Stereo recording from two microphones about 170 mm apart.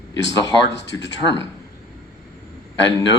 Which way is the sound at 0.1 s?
90° left.